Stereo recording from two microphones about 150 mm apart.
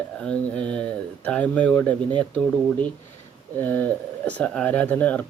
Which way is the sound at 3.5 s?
10° left (ahead or behind).